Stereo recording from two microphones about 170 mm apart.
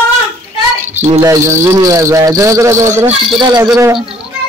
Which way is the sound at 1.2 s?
20° right (ahead or behind).